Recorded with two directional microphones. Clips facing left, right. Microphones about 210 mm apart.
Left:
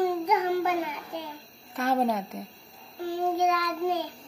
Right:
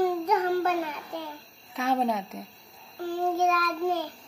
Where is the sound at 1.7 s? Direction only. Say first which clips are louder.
Left 1 dB; centre (ahead or behind).